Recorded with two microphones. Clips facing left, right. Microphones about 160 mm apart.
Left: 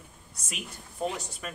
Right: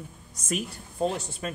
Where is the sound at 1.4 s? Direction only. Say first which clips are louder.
Right 7 dB; 30° right (ahead or behind).